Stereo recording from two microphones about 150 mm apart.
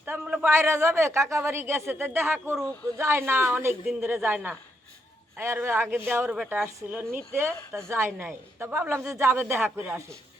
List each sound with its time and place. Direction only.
0.0 s a woman's voice: 15° right (ahead or behind)